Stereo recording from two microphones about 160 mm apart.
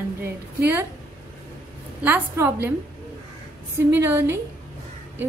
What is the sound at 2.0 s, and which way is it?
Speech, 10° right (ahead or behind).